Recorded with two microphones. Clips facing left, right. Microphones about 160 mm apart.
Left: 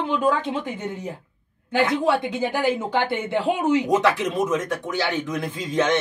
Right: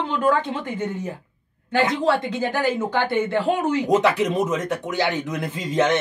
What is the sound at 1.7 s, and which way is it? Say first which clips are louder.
Speech: even; 15° left (ahead or behind).